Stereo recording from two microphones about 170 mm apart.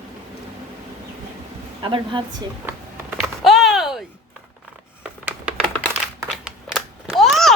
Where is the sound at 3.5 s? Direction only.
Centre (ahead or behind).